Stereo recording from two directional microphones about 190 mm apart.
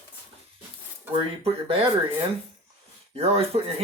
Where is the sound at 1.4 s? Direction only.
30° right (ahead or behind).